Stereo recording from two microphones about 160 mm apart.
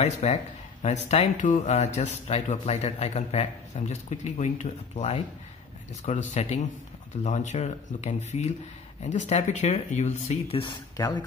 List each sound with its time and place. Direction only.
0.0 s speech: 45° left (ahead or behind)
11.0 s speech: 25° left (ahead or behind)